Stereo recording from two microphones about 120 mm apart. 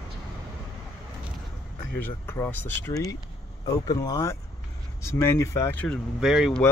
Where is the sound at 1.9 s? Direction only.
15° left (ahead or behind).